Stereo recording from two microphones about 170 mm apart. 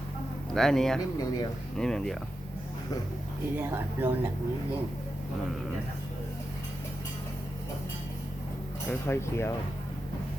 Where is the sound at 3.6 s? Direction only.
15° right (ahead or behind).